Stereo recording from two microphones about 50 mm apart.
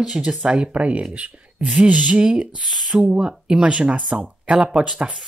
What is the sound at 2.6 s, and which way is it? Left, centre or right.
Speech, centre.